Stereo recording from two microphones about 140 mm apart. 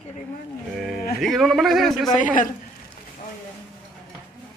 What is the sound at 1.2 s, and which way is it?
Speech, centre (ahead or behind).